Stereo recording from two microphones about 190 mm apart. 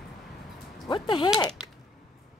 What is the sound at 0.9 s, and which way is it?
Speech, 25° left (ahead or behind).